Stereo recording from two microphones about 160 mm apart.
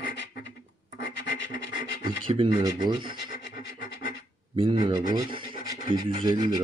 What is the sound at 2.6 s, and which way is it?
Speech, 25° right (ahead or behind).